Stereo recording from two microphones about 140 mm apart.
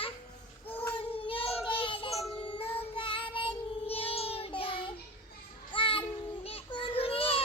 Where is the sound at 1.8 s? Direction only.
40° left (ahead or behind).